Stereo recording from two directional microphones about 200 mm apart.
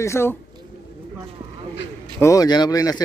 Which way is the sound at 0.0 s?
15° left (ahead or behind).